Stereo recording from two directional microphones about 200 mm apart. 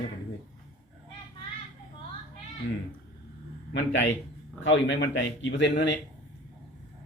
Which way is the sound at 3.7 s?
60° left (ahead or behind).